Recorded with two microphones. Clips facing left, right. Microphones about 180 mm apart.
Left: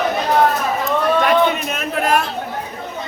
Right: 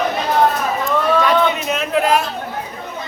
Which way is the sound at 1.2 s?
55° left (ahead or behind).